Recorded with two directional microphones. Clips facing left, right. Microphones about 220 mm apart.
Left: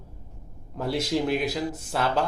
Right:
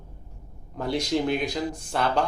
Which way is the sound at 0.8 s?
5° left (ahead or behind).